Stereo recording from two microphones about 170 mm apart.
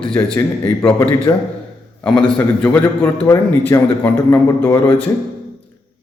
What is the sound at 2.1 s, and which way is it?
A man's voice, 5° left (ahead or behind).